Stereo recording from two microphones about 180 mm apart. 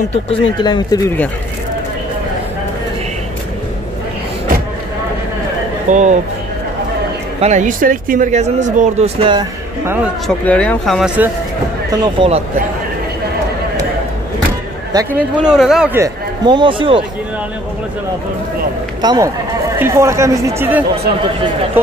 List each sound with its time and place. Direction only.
0.1 s speech: 30° left (ahead or behind)
5.9 s speech: 40° right (ahead or behind)
7.3 s speech: 40° right (ahead or behind)
10.2 s speech: 5° left (ahead or behind)
11.9 s speech: 25° right (ahead or behind)
14.9 s speech: 20° right (ahead or behind)
15.3 s speech: 5° right (ahead or behind)
16.0 s speech: 25° right (ahead or behind)
18.9 s speech: 20° right (ahead or behind)